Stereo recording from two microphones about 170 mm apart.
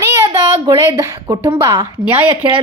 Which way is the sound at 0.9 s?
15° right (ahead or behind).